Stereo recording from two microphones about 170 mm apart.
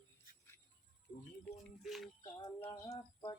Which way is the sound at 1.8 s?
Centre (ahead or behind).